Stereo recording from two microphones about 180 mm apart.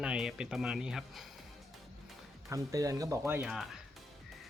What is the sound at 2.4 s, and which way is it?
Speech, 20° right (ahead or behind).